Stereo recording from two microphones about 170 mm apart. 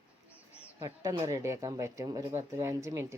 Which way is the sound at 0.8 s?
20° right (ahead or behind).